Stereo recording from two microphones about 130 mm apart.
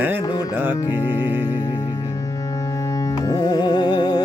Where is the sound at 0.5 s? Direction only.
15° right (ahead or behind).